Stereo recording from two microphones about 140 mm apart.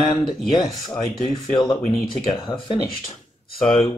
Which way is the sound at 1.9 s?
Centre (ahead or behind).